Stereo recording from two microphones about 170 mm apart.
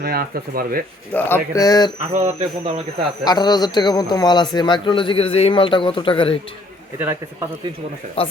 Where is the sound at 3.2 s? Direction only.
25° left (ahead or behind).